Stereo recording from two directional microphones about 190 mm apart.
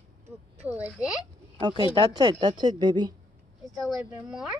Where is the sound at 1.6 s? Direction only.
20° right (ahead or behind).